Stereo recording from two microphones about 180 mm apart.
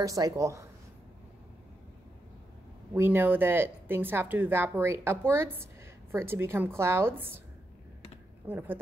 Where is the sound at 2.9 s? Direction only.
10° right (ahead or behind).